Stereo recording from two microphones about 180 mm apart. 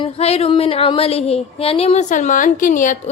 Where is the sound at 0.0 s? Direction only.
35° left (ahead or behind).